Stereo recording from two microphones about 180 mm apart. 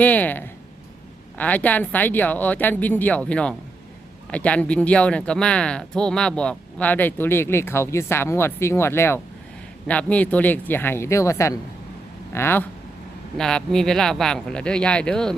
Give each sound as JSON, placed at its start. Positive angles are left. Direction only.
{"t": 0.0, "sound": "speech", "side_deg": 10}